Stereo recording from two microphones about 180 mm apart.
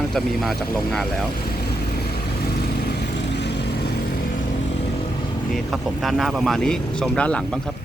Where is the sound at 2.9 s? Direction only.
65° left (ahead or behind).